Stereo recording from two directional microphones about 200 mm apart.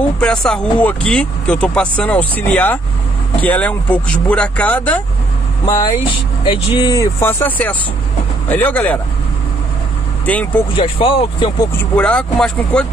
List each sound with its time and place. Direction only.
0.2 s speech: 5° left (ahead or behind)
5.7 s speech: 20° left (ahead or behind)
10.2 s speech: 10° left (ahead or behind)
10.8 s speech: 25° left (ahead or behind)
11.7 s speech: 10° left (ahead or behind)